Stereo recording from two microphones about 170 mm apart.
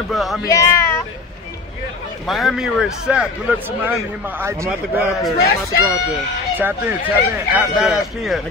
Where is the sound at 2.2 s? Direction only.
Centre (ahead or behind).